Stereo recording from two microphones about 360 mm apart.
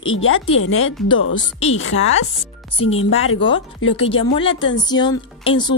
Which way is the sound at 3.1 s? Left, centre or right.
Left.